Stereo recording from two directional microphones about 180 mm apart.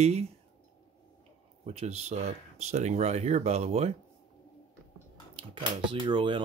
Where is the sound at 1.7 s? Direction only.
35° right (ahead or behind).